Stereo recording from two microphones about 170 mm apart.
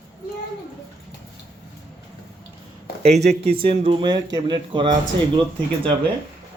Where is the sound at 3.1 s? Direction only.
75° right (ahead or behind).